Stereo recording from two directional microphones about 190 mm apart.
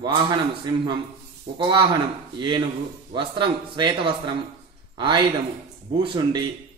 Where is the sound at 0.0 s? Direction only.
25° right (ahead or behind).